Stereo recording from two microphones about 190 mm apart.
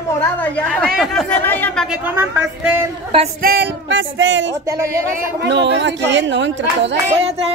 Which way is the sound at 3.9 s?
75° right (ahead or behind).